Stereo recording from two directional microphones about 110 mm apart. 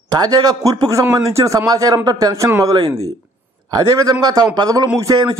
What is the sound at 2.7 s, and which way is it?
A man's voice, 40° right (ahead or behind).